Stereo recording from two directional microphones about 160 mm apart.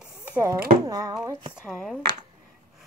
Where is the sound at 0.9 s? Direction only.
20° right (ahead or behind).